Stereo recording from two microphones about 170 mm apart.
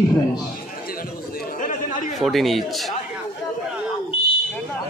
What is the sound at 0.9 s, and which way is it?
Chatter, 60° left (ahead or behind).